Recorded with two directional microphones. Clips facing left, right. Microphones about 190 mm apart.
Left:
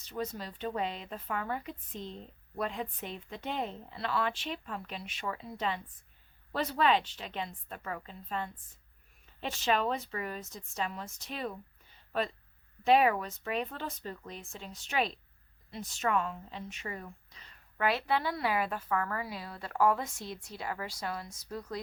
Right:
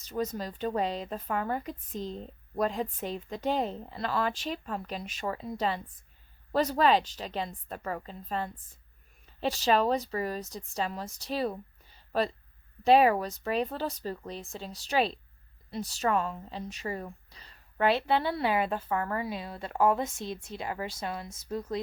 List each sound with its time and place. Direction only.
0.0 s speech: 40° right (ahead or behind); by 21.8 s 25° right (ahead or behind)